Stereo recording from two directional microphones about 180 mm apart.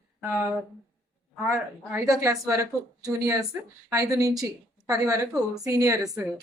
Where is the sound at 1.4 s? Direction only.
Centre (ahead or behind).